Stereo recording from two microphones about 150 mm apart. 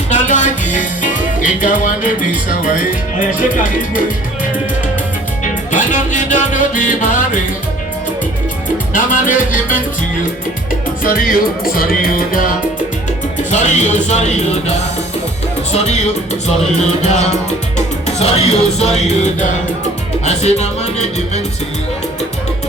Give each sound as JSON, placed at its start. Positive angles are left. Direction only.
{"t": 0.1, "sound": "music", "side_deg": 55}
{"t": 5.7, "sound": "music", "side_deg": 55}
{"t": 8.9, "sound": "music", "side_deg": 65}
{"t": 11.0, "sound": "music", "side_deg": 70}
{"t": 13.5, "sound": "speech", "side_deg": 50}
{"t": 17.0, "sound": "speech", "side_deg": 50}
{"t": 17.7, "sound": "music", "side_deg": 45}
{"t": 20.2, "sound": "speech", "side_deg": 45}